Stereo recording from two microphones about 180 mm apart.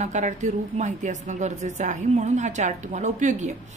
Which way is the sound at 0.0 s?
40° right (ahead or behind).